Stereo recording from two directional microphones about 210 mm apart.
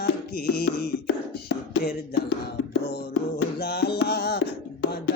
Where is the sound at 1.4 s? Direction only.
55° left (ahead or behind).